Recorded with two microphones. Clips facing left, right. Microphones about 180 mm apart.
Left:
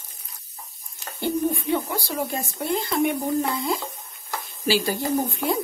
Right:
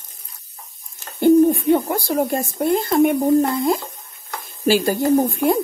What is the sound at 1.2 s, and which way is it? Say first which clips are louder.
Speech: right 11 dB; 50° right (ahead or behind).